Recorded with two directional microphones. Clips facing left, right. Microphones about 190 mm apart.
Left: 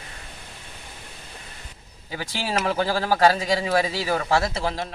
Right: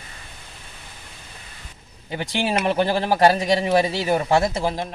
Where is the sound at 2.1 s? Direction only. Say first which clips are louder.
Right 4 dB; 25° right (ahead or behind).